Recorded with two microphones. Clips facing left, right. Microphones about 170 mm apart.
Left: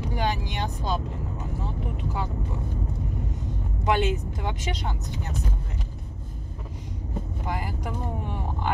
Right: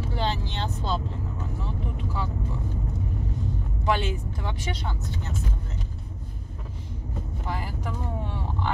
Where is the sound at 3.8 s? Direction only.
20° left (ahead or behind).